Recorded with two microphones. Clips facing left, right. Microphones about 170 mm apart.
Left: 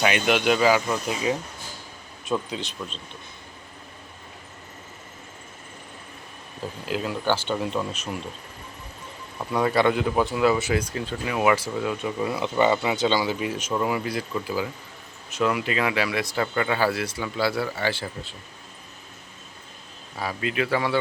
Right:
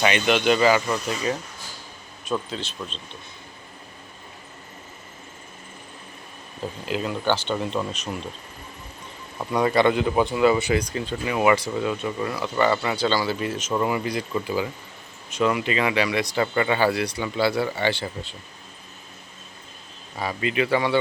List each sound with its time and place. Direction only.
0.0 s speech: 5° left (ahead or behind)
6.8 s speech: 5° left (ahead or behind)
9.4 s speech: centre (ahead or behind)
12.4 s speech: 20° left (ahead or behind)
13.7 s speech: centre (ahead or behind)
20.1 s speech: centre (ahead or behind)